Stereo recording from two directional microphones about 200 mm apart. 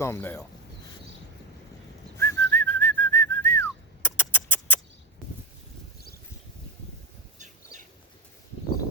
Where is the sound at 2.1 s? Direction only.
10° left (ahead or behind).